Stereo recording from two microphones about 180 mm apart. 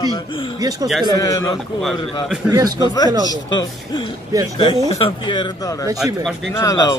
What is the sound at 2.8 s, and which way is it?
Speech, 20° left (ahead or behind).